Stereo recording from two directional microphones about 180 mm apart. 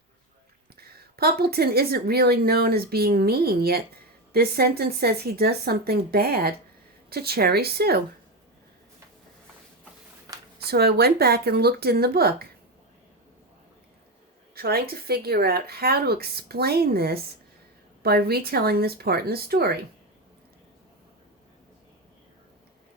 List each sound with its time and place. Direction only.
0.8 s speech: 60° right (ahead or behind)
10.6 s speech: 60° right (ahead or behind)
14.5 s speech: 60° right (ahead or behind)